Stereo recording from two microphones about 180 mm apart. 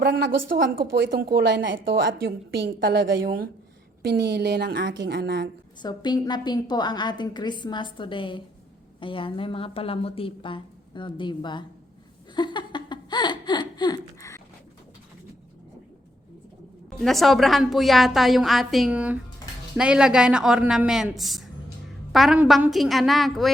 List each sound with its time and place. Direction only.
0.0 s a woman's voice: 60° right (ahead or behind)
5.8 s a woman's voice: 25° left (ahead or behind)
12.3 s laughter: 25° left (ahead or behind)
17.0 s a woman's voice: centre (ahead or behind)